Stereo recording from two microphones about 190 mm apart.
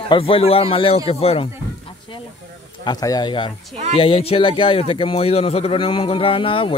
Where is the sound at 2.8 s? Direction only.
20° left (ahead or behind).